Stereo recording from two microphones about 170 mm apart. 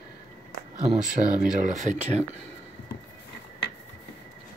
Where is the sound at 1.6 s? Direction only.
45° right (ahead or behind).